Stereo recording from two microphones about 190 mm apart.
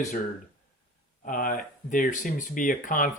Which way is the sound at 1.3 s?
50° left (ahead or behind).